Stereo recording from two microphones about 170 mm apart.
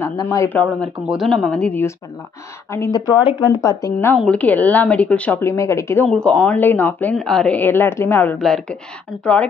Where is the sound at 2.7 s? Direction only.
20° left (ahead or behind).